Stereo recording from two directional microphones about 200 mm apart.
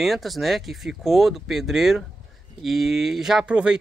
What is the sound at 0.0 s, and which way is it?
Speech, centre (ahead or behind).